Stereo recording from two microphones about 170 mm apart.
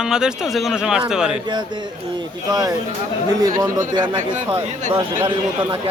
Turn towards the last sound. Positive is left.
turn(degrees=-25)  # may be behind; listen again after turning